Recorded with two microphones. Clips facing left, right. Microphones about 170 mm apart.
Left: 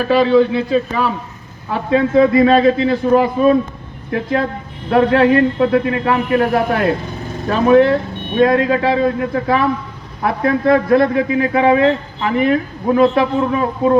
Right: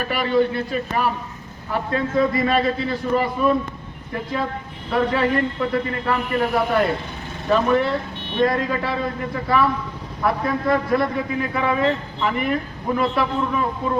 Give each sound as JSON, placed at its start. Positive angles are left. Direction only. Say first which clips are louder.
{"t": 0.0, "sound": "a man's voice", "louder": "left 8 dB", "side_deg": 90}
{"t": 12.4, "sound": "a man's voice", "louder": "left 8 dB", "side_deg": 90}